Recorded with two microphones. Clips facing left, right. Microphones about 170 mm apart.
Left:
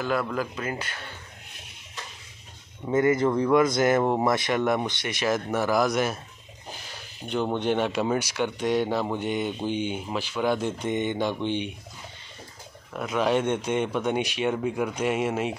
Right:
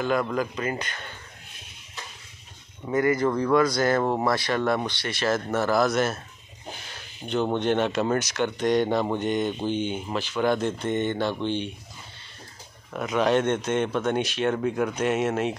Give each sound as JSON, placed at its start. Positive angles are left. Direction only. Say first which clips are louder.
{"t": 0.0, "sound": "speech", "louder": "right 2 dB", "side_deg": 5}
{"t": 2.9, "sound": "a man's voice", "louder": "left 1 dB", "side_deg": 25}
{"t": 7.5, "sound": "a man's voice", "louder": "right 1 dB", "side_deg": 10}
{"t": 12.9, "sound": "a man's voice", "louder": "right 2 dB", "side_deg": 5}